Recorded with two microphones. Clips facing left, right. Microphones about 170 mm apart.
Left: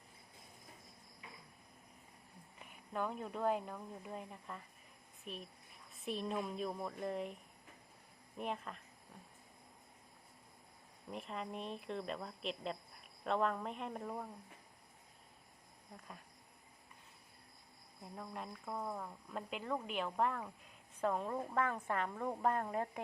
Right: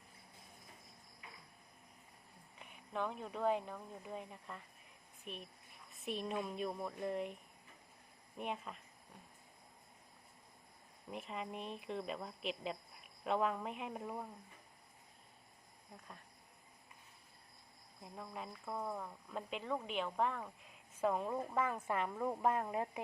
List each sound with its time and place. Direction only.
2.6 s speech: 5° left (ahead or behind)
8.4 s speech: centre (ahead or behind)
11.1 s speech: centre (ahead or behind)
18.0 s a woman's voice: centre (ahead or behind)